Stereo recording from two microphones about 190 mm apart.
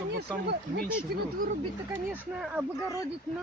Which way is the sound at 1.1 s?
55° right (ahead or behind).